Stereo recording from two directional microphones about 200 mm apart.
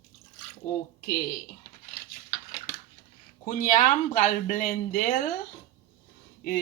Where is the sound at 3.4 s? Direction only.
40° left (ahead or behind).